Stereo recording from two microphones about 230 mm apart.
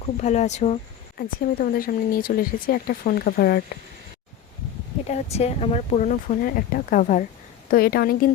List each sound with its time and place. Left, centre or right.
0.2 s speech: left
1.2 s speech: left
5.0 s speech: left